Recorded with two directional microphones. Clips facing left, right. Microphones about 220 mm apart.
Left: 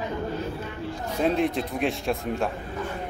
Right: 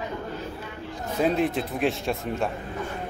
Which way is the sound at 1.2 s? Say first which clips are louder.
Even; centre (ahead or behind).